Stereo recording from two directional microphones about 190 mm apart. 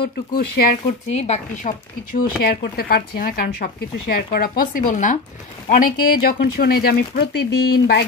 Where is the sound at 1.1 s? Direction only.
35° left (ahead or behind).